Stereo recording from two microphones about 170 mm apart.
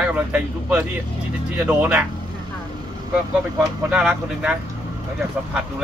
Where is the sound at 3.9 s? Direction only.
5° right (ahead or behind).